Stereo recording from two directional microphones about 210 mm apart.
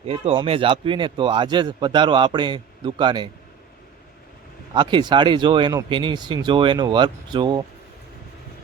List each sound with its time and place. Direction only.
0.0 s speech: 25° right (ahead or behind)
4.7 s speech: 20° right (ahead or behind)